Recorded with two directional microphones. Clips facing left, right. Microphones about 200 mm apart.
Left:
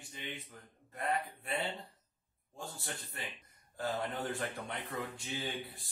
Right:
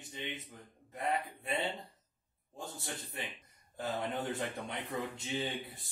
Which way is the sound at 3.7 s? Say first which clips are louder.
Even; 20° right (ahead or behind).